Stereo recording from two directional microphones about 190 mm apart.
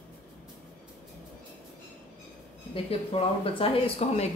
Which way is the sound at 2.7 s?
30° left (ahead or behind).